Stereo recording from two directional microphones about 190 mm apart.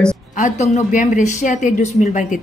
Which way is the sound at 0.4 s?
35° left (ahead or behind).